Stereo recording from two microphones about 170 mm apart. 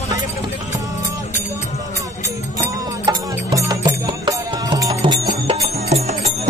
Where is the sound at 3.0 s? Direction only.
25° right (ahead or behind).